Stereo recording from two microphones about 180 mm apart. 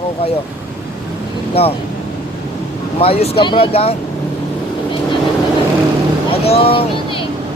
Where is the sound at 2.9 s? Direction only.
35° left (ahead or behind).